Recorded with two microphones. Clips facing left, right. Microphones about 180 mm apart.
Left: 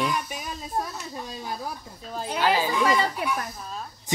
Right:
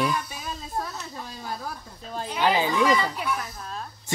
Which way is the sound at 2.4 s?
20° right (ahead or behind).